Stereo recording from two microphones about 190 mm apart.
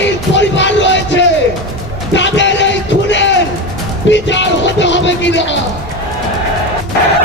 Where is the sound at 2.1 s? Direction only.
70° left (ahead or behind).